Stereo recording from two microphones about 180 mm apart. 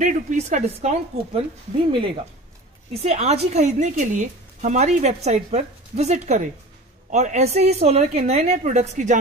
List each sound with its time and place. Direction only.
0.0 s a woman's voice: 45° right (ahead or behind)
2.9 s a woman's voice: 35° right (ahead or behind)